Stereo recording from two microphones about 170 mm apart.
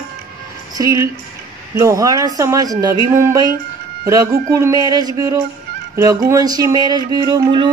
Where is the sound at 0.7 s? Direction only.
20° right (ahead or behind).